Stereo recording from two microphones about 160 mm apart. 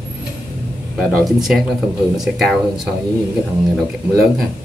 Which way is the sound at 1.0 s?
Centre (ahead or behind).